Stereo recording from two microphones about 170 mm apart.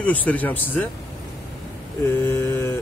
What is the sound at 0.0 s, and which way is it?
Speech, 10° left (ahead or behind).